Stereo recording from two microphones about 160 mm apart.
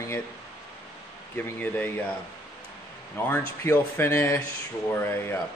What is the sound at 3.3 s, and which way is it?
Speech, 15° left (ahead or behind).